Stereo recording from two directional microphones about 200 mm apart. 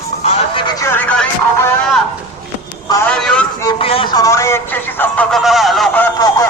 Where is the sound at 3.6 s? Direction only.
25° left (ahead or behind); by 6.0 s centre (ahead or behind).